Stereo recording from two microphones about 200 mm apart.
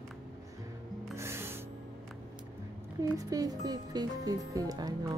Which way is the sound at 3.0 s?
15° right (ahead or behind).